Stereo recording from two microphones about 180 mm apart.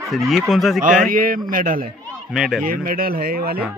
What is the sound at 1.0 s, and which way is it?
Speech, 50° right (ahead or behind).